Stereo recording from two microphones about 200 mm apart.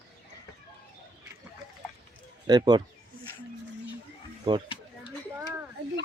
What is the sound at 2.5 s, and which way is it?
Speech, 20° right (ahead or behind).